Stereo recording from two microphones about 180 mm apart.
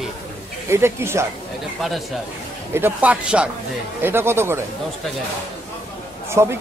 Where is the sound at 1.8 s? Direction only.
Centre (ahead or behind).